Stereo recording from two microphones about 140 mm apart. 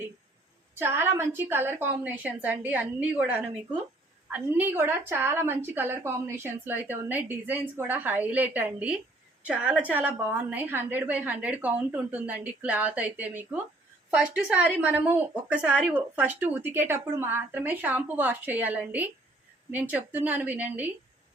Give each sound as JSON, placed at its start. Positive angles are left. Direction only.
{"t": 0.8, "sound": "a woman's voice", "side_deg": -15}